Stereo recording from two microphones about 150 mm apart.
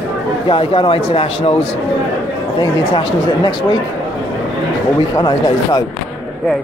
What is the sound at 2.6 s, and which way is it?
Speech, 30° left (ahead or behind).